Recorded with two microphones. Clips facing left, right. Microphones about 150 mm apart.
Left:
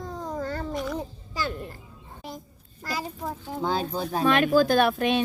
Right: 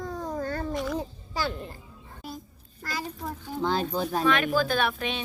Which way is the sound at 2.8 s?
20° left (ahead or behind).